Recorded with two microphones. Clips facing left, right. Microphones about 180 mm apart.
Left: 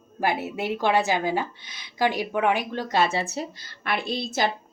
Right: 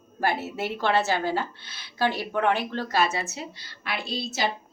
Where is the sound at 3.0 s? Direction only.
30° left (ahead or behind); by 4.5 s 50° left (ahead or behind).